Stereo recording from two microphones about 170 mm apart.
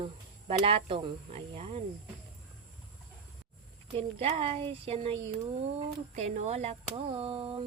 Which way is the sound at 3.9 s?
35° right (ahead or behind).